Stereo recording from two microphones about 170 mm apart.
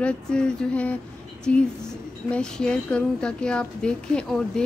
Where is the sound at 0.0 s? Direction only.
5° left (ahead or behind).